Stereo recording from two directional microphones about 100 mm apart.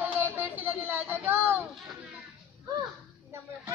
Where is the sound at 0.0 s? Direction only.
20° right (ahead or behind).